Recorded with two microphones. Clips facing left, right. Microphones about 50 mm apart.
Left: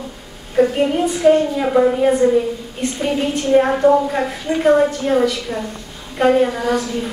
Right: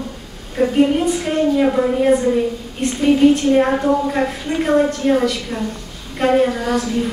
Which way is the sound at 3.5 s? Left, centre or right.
Centre.